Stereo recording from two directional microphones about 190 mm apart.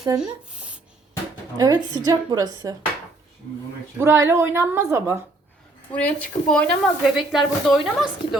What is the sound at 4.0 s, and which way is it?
A woman's voice, 15° right (ahead or behind).